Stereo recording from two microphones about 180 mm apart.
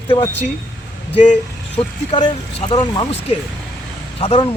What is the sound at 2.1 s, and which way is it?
Speech, 25° left (ahead or behind).